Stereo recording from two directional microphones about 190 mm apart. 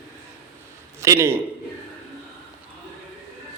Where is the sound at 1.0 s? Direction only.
15° right (ahead or behind).